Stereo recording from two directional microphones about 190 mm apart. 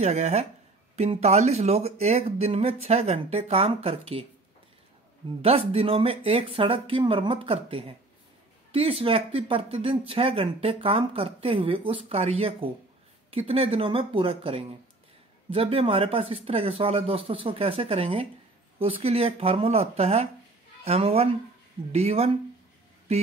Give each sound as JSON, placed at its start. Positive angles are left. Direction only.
{"t": 0.0, "sound": "speech", "side_deg": -35}
{"t": 5.4, "sound": "speech", "side_deg": -30}